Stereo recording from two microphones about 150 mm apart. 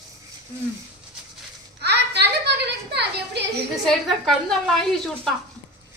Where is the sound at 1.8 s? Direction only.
90° right.